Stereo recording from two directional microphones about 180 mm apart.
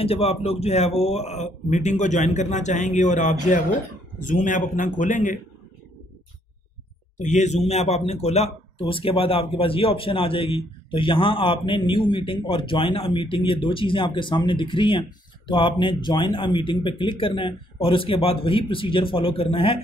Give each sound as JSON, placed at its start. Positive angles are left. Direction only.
{"t": 0.0, "sound": "a man's voice", "side_deg": 35}
{"t": 7.2, "sound": "speech", "side_deg": 40}